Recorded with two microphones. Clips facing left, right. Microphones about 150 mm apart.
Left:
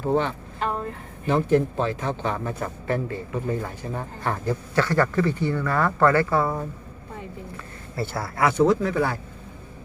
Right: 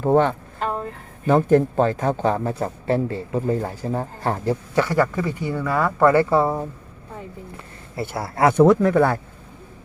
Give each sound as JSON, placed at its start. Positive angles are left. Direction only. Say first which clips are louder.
{"t": 0.0, "sound": "a sound", "louder": "right 6 dB", "side_deg": -50}
{"t": 1.3, "sound": "speech", "louder": "right 4 dB", "side_deg": -50}
{"t": 4.8, "sound": "speech", "louder": "right 1 dB", "side_deg": -10}
{"t": 6.1, "sound": "a woman's voice", "louder": "right 7 dB", "side_deg": -25}
{"t": 7.5, "sound": "a sound", "louder": "right 2 dB", "side_deg": -20}
{"t": 8.5, "sound": "speech", "louder": "right 6 dB", "side_deg": -55}